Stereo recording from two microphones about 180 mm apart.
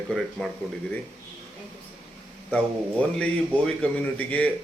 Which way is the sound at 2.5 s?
5° left (ahead or behind).